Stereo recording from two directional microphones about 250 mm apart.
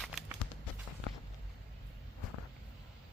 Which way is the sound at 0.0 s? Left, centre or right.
Centre.